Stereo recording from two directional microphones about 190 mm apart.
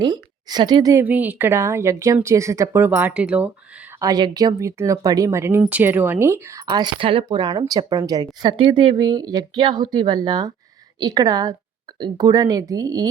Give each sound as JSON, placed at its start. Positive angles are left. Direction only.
{"t": 0.0, "sound": "a woman's voice", "side_deg": -20}
{"t": 4.0, "sound": "speech", "side_deg": -20}